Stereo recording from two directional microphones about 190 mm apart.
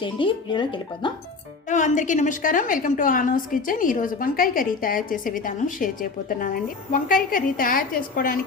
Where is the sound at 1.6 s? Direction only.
40° left (ahead or behind).